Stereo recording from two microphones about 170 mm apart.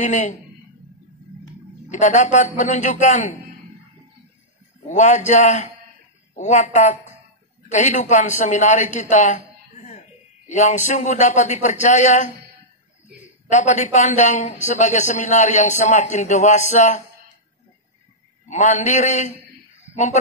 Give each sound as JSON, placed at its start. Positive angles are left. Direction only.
{"t": 0.0, "sound": "a man's voice", "side_deg": 50}
{"t": 1.9, "sound": "a man's voice", "side_deg": 45}
{"t": 4.8, "sound": "a man's voice", "side_deg": 45}
{"t": 13.5, "sound": "a man's voice", "side_deg": 45}
{"t": 18.5, "sound": "a man's voice", "side_deg": 45}